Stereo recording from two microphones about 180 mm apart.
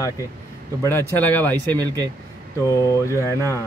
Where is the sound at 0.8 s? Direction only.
10° left (ahead or behind).